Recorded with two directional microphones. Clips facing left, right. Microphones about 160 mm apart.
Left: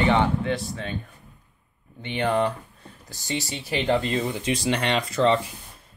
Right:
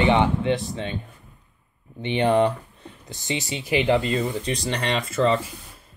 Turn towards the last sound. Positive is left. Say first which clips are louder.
# even
turn(degrees=0)  # may be behind; listen again after turning